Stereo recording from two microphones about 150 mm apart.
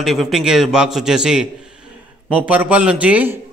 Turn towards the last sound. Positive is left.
turn(degrees=-10)  # may be behind; listen again after turning